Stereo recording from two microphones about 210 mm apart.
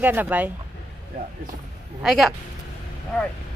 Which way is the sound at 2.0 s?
Centre (ahead or behind).